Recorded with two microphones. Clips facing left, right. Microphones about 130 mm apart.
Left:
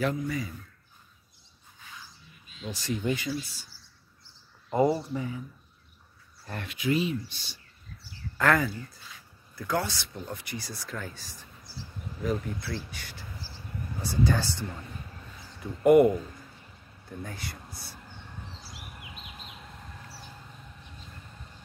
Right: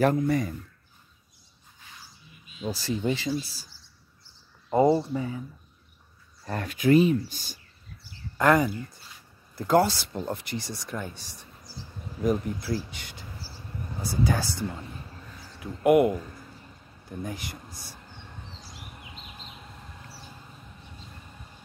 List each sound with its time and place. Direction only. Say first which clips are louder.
0.0 s speech: right 7 dB; 50° right (ahead or behind)
2.6 s speech: right 3 dB; 35° right (ahead or behind)
4.7 s speech: right 4 dB; 30° right (ahead or behind)
6.4 s speech: right 6 dB; 40° right (ahead or behind)
8.4 s speech: right 4 dB; 15° right (ahead or behind)
9.6 s speech: right 8 dB; 30° right (ahead or behind)
10.6 s speech: right 3 dB; 15° right (ahead or behind)
12.4 s speech: right 5 dB; 25° right (ahead or behind); by 16.2 s 5° right (ahead or behind)
17.2 s speech: right 5 dB; 15° right (ahead or behind)
18.6 s bird: right 1 dB; 10° left (ahead or behind)